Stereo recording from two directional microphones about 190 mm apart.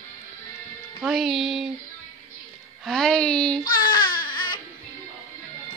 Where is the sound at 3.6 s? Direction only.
50° left (ahead or behind).